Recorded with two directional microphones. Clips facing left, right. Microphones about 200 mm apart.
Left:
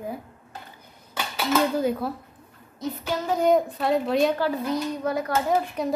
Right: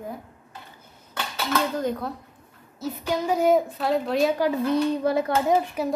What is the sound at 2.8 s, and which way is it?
A woman's voice, 10° right (ahead or behind).